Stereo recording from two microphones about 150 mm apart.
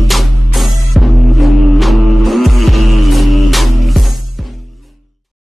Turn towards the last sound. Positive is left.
turn(degrees=0)  # may be behind; listen again after turning